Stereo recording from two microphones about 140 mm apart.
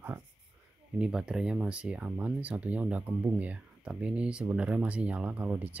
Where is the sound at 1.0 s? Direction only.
5° right (ahead or behind).